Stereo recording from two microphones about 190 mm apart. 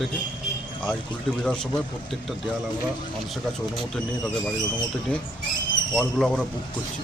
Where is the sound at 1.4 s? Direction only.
5° left (ahead or behind).